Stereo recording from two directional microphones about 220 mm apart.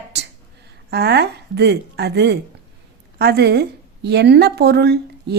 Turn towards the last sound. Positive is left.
turn(degrees=-50)  # may be behind; listen again after turning